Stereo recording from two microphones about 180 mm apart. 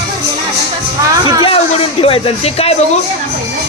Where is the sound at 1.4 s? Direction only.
30° left (ahead or behind).